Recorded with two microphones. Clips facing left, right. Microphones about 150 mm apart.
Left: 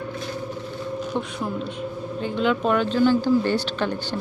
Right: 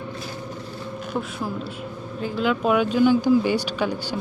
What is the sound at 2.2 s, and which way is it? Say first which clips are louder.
Speech: even; 5° right (ahead or behind).